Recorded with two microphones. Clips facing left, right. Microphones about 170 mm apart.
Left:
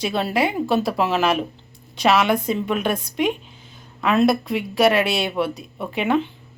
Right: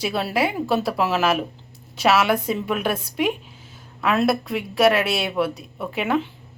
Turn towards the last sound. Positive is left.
turn(degrees=0)  # may be behind; listen again after turning